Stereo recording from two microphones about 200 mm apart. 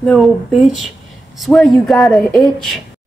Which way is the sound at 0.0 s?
Centre (ahead or behind).